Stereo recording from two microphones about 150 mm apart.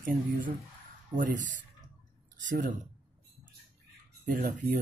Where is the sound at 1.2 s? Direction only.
60° right (ahead or behind).